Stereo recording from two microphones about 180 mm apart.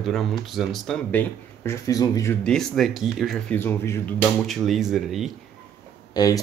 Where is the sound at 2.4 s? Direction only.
5° left (ahead or behind).